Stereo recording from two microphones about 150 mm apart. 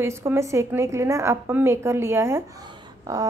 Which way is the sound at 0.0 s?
20° right (ahead or behind).